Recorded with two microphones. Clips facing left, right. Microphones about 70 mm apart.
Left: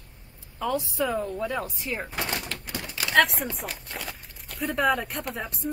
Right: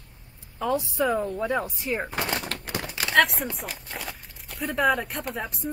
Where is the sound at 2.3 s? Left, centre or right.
Right.